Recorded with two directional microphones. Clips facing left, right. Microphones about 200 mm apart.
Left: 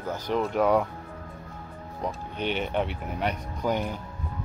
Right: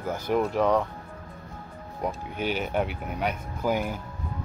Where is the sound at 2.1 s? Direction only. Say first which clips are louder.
Right 1 dB; 5° right (ahead or behind).